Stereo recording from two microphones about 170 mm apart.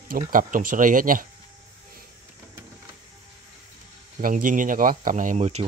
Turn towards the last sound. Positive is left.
turn(degrees=-40)  # may be behind; listen again after turning